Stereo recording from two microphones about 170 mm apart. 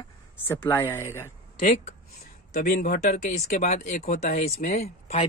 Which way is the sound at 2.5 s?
55° left (ahead or behind).